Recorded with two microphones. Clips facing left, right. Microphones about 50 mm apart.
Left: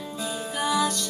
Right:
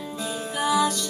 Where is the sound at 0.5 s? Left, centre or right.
Centre.